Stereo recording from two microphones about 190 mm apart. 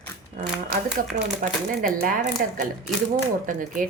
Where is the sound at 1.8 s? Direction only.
50° right (ahead or behind).